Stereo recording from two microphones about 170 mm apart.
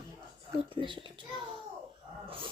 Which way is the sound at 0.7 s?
30° right (ahead or behind).